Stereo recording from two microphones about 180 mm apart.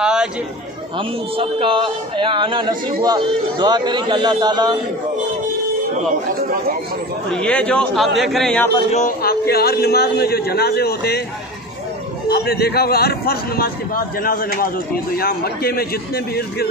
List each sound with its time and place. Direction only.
0.0 s a sound: 5° right (ahead or behind)
0.9 s a man's voice: 30° right (ahead or behind)
7.2 s speech: 5° left (ahead or behind)
8.9 s a man's voice: 50° left (ahead or behind)
12.3 s a man's voice: 60° left (ahead or behind)